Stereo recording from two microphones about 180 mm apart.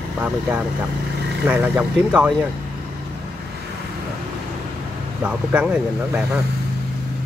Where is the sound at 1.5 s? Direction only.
10° right (ahead or behind).